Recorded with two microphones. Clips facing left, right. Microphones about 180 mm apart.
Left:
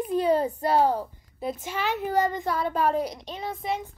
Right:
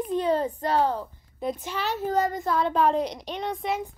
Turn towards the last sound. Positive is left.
turn(degrees=0)  # may be behind; listen again after turning